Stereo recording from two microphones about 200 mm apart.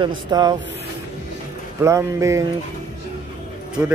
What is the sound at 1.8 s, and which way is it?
Speech, 15° right (ahead or behind).